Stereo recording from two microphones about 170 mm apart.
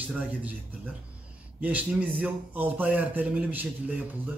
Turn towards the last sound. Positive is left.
turn(degrees=-10)  # may be behind; listen again after turning